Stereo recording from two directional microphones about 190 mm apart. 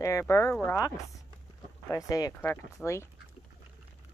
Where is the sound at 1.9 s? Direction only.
20° left (ahead or behind).